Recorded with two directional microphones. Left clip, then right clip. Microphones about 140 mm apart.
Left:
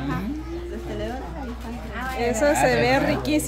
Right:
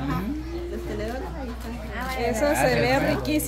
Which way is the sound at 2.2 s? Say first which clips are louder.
Left 3 dB; 35° left (ahead or behind).